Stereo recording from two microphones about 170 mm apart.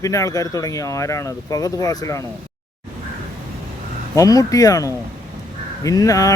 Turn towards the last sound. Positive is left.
turn(degrees=20)  # may be behind; listen again after turning